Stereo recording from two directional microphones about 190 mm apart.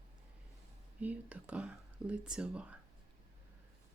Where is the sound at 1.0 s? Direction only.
5° right (ahead or behind).